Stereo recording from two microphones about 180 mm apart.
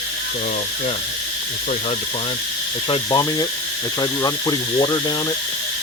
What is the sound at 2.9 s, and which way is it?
Speech, 20° left (ahead or behind).